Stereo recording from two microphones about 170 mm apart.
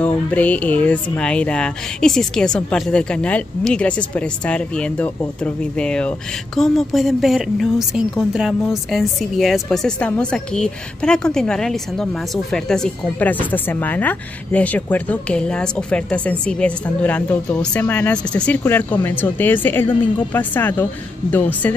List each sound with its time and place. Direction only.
0.0 s speech: 10° left (ahead or behind)